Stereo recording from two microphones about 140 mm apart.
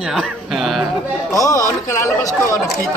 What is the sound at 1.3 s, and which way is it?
Speech, 25° left (ahead or behind).